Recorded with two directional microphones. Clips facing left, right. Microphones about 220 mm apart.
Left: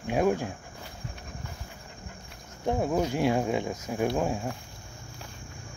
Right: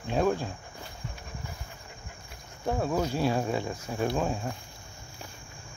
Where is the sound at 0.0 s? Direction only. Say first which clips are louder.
Left 1 dB; 10° left (ahead or behind).